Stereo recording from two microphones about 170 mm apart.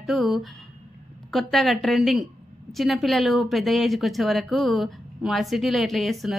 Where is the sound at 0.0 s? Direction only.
Centre (ahead or behind).